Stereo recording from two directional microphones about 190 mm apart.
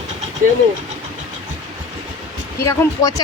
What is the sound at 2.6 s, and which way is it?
Speech, 20° left (ahead or behind).